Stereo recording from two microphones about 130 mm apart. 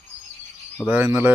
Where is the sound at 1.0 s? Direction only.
15° right (ahead or behind).